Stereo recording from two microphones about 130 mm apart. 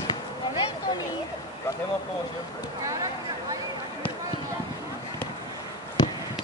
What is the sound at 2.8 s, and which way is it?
Speech, 25° right (ahead or behind).